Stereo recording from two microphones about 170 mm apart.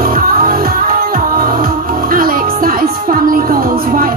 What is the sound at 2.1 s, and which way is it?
Music, 55° right (ahead or behind).